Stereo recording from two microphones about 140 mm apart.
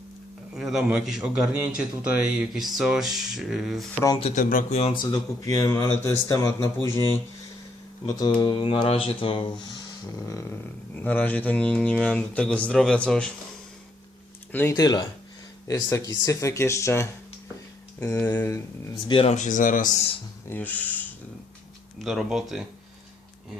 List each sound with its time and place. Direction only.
0.5 s a man's voice: centre (ahead or behind)
4.2 s speech: 55° left (ahead or behind)
5.1 s speech: 25° left (ahead or behind)
8.1 s speech: 30° left (ahead or behind)
10.9 s speech: 10° left (ahead or behind)
14.5 s speech: 15° left (ahead or behind)
14.8 s speech: 25° left (ahead or behind)
19.0 s speech: 35° left (ahead or behind)
19.3 s speech: 65° left (ahead or behind)
20.5 s speech: 10° left (ahead or behind)
21.9 s a man's voice: centre (ahead or behind)